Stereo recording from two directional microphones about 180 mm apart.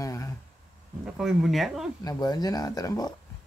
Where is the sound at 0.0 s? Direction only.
20° left (ahead or behind).